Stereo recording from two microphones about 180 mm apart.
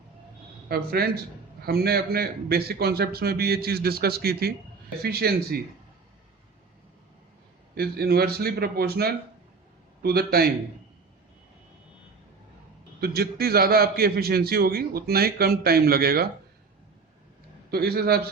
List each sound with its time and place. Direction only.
0.7 s a man's voice: 60° right (ahead or behind)
7.8 s a man's voice: 60° right (ahead or behind)
13.0 s a man's voice: 60° right (ahead or behind)
17.7 s a man's voice: 60° right (ahead or behind)